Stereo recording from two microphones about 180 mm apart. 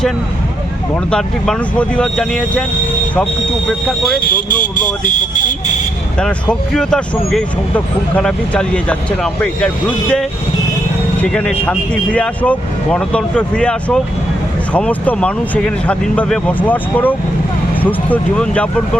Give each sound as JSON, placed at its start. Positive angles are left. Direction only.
{"t": 1.1, "sound": "speech", "side_deg": 5}
{"t": 4.2, "sound": "speech", "side_deg": 50}
{"t": 6.1, "sound": "speech", "side_deg": 5}